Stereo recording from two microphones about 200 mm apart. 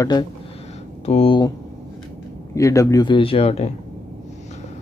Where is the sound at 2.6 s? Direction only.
15° left (ahead or behind).